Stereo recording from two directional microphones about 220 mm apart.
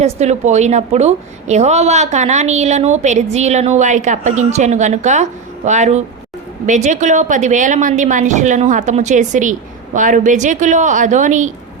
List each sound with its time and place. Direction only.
0.0 s a woman's voice: 30° right (ahead or behind)